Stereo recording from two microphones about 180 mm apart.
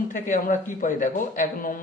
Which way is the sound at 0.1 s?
45° left (ahead or behind).